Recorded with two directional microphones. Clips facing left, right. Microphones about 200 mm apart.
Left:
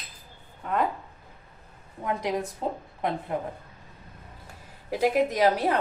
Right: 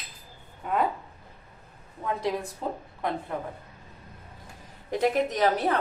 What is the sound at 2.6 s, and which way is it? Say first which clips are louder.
Speech: even; 30° left (ahead or behind).